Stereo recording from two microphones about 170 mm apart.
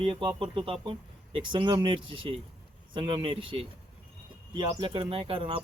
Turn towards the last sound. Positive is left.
turn(degrees=-35)  # may be behind; listen again after turning